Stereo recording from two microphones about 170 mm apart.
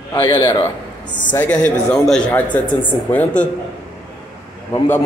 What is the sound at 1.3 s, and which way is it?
Speech, 10° left (ahead or behind).